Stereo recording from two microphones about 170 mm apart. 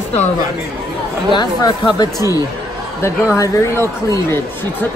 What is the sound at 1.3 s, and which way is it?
Speech, 25° left (ahead or behind).